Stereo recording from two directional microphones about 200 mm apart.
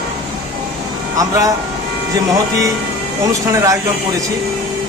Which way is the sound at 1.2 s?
15° right (ahead or behind).